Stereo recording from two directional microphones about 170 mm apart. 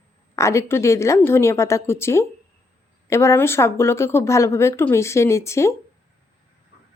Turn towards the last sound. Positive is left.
turn(degrees=15)  # may be behind; listen again after turning